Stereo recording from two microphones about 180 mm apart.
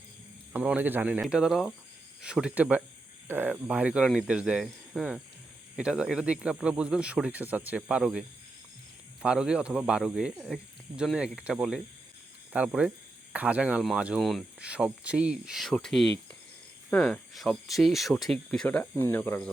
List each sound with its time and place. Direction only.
0.5 s speech: 10° right (ahead or behind)
9.2 s speech: 5° right (ahead or behind)